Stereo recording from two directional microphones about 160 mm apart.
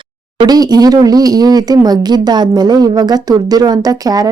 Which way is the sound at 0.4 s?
25° right (ahead or behind).